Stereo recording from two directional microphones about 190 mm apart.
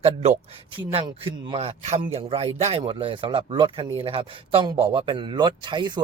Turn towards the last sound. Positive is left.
turn(degrees=-25)  # may be behind; listen again after turning